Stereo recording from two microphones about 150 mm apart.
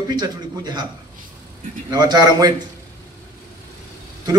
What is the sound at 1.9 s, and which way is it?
Speech, 25° right (ahead or behind).